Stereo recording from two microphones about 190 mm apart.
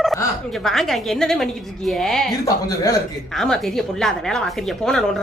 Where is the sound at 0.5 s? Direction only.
Centre (ahead or behind).